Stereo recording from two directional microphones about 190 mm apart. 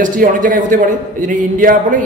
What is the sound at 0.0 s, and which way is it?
A woman's voice, 45° right (ahead or behind).